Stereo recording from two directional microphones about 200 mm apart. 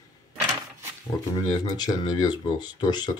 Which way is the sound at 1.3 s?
20° left (ahead or behind).